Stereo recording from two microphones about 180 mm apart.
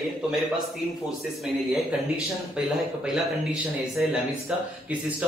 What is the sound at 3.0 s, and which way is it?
A man's voice, 5° right (ahead or behind).